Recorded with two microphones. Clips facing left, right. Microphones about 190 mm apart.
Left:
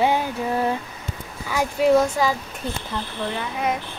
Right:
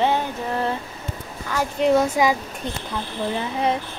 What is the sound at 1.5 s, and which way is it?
Speech, 5° left (ahead or behind).